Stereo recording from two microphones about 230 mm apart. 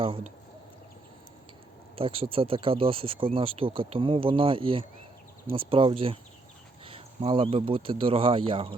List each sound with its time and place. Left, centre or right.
2.0 s speech: right